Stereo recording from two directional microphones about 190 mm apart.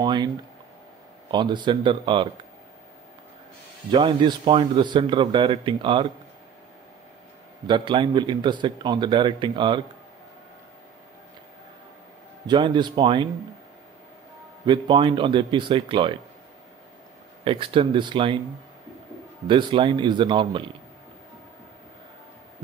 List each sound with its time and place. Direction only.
0.0 s a sound: 20° right (ahead or behind)
1.3 s a man's voice: 25° right (ahead or behind)
3.9 s a man's voice: 25° right (ahead or behind)
7.6 s a man's voice: 25° right (ahead or behind)
12.4 s a man's voice: 25° right (ahead or behind)
14.7 s a man's voice: 25° right (ahead or behind)
17.5 s a man's voice: 25° right (ahead or behind)
19.4 s a man's voice: 25° right (ahead or behind)